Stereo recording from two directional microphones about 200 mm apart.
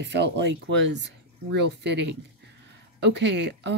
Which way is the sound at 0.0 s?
60° right (ahead or behind).